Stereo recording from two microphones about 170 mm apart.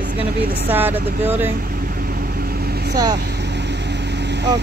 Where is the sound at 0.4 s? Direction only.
65° right (ahead or behind).